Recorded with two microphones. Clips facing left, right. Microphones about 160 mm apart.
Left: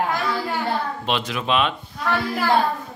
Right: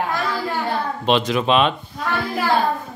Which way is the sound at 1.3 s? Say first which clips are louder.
Right 5 dB; 30° right (ahead or behind).